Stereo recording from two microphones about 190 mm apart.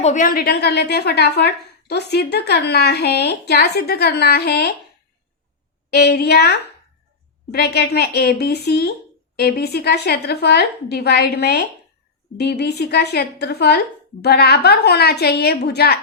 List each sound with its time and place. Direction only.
0.0 s a woman's voice: 40° left (ahead or behind); by 4.7 s 60° left (ahead or behind)
5.9 s a woman's voice: 55° left (ahead or behind)